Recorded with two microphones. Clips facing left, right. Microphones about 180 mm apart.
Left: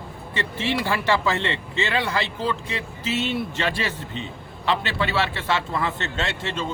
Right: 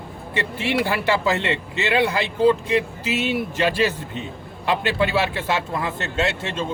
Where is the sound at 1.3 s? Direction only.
20° right (ahead or behind).